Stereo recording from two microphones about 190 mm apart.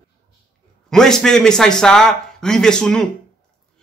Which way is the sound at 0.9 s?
5° left (ahead or behind).